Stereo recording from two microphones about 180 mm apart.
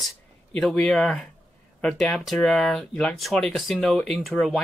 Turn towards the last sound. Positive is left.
turn(degrees=0)  # may be behind; listen again after turning